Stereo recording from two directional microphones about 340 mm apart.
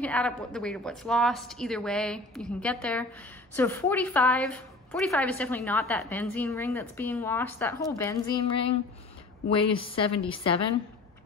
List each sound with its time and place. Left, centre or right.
0.0 s a woman's voice: centre